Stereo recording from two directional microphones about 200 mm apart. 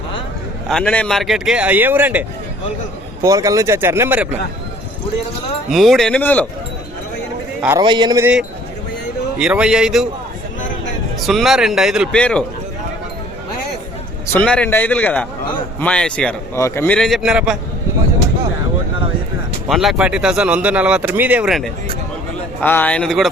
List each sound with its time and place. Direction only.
0.7 s speech: 5° left (ahead or behind); by 4.3 s 10° right (ahead or behind)
5.7 s speech: centre (ahead or behind)
7.8 s a man's voice: 20° right (ahead or behind)
9.4 s speech: 5° right (ahead or behind)
11.2 s speech: centre (ahead or behind)
14.3 s a man's voice: 5° left (ahead or behind)
19.6 s speech: centre (ahead or behind)
22.6 s speech: 10° left (ahead or behind)